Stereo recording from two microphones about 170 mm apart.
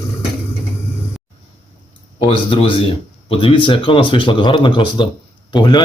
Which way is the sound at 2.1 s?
35° left (ahead or behind).